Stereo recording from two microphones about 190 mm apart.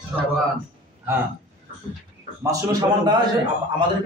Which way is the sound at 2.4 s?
20° right (ahead or behind).